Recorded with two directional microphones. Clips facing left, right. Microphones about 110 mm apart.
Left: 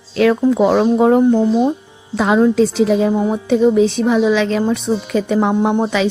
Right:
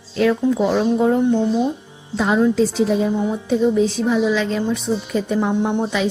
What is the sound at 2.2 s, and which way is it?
Music, 70° left (ahead or behind).